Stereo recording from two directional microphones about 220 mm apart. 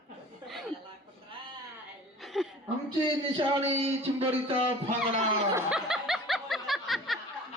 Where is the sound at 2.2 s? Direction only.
Centre (ahead or behind).